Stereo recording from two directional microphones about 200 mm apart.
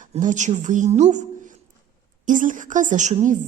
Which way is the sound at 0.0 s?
40° right (ahead or behind).